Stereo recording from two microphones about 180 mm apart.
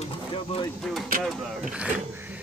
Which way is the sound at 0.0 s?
30° left (ahead or behind).